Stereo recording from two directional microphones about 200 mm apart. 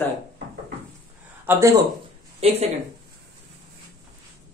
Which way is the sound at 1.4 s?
15° right (ahead or behind).